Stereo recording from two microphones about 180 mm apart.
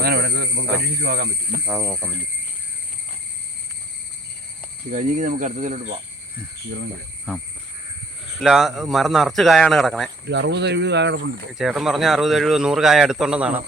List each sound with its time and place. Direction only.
0.0 s cricket: 65° right (ahead or behind)
1.0 s speech: 55° right (ahead or behind)
4.9 s speech: 40° right (ahead or behind)
7.3 s speech: 5° left (ahead or behind)
10.2 s speech: 70° right (ahead or behind)
11.5 s speech: centre (ahead or behind)